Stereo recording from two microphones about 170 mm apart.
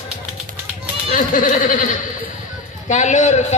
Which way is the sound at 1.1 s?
50° left (ahead or behind).